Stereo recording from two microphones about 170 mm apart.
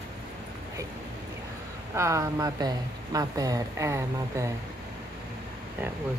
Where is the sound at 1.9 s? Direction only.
15° right (ahead or behind).